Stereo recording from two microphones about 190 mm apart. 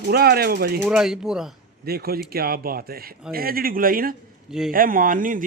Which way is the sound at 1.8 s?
55° right (ahead or behind).